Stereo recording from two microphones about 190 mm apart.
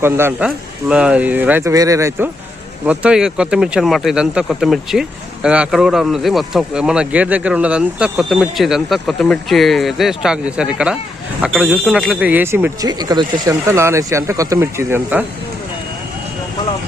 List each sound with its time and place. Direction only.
0.0 s speech: 10° right (ahead or behind)